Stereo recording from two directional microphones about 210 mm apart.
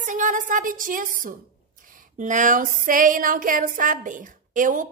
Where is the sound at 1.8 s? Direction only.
40° right (ahead or behind).